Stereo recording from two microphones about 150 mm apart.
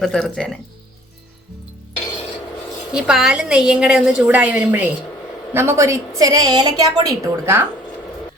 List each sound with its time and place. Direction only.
0.0 s a woman's voice: centre (ahead or behind)
2.9 s a woman's voice: 5° right (ahead or behind)